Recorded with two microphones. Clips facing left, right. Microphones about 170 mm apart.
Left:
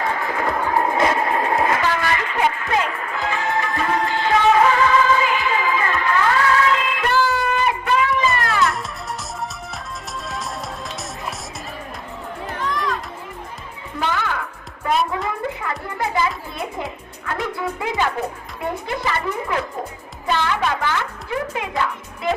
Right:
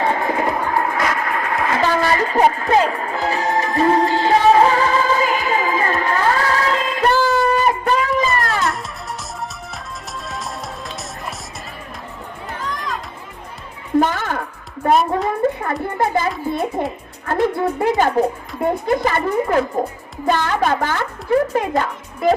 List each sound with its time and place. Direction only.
0.0 s music: 25° right (ahead or behind)
0.8 s music: 25° left (ahead or behind)
1.7 s music: 35° right (ahead or behind)
10.2 s music: centre (ahead or behind)
14.0 s music: 45° right (ahead or behind)
14.8 s a sound: 45° right (ahead or behind)
15.6 s music: 50° right (ahead or behind)
17.2 s a child's voice: 50° right (ahead or behind)